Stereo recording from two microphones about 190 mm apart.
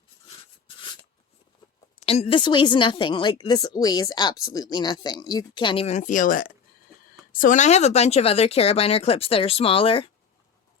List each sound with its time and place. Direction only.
2.0 s speech: 30° left (ahead or behind)